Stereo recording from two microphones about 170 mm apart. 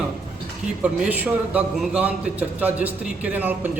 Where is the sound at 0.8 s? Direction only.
10° right (ahead or behind).